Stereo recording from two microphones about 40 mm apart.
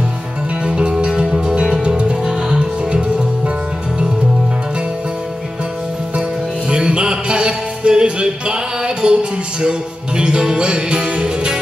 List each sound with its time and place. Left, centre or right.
0.7 s music: right
6.7 s music: right